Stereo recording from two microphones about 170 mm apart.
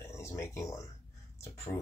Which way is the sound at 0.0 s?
15° left (ahead or behind).